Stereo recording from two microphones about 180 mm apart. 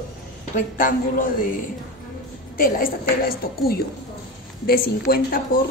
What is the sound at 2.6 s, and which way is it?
Speech, 55° left (ahead or behind).